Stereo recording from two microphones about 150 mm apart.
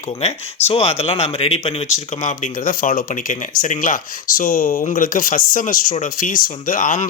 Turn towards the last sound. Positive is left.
turn(degrees=65)  # may be behind; listen again after turning